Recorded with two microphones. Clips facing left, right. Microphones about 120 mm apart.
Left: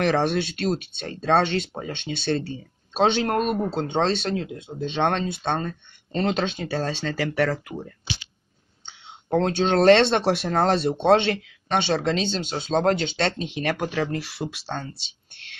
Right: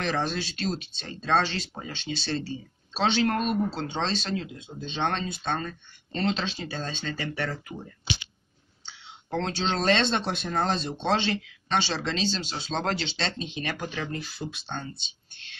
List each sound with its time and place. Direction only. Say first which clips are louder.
0.0 s speech: left 7 dB; 65° left (ahead or behind)
5.6 s speech: left 5 dB; 50° left (ahead or behind); by 7.5 s 80° left
8.8 s speech: left 3 dB; 55° left (ahead or behind)